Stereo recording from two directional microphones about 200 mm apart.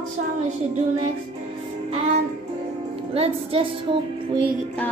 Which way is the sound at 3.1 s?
30° right (ahead or behind).